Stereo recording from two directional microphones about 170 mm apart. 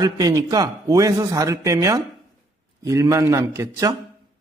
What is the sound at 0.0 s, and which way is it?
A man's voice, 20° right (ahead or behind).